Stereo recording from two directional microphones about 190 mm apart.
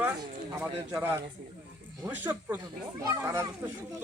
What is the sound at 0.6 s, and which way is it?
Speech, 10° right (ahead or behind).